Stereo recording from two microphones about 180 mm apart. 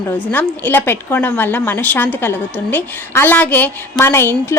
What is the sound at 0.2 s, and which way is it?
Speech, 10° left (ahead or behind).